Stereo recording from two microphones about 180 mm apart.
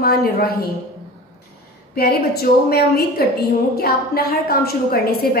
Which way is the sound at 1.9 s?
60° left (ahead or behind).